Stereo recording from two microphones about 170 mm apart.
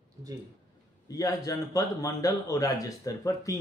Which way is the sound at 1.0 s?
20° left (ahead or behind).